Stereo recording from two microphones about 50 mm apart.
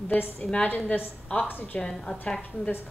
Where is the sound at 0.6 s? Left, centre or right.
Left.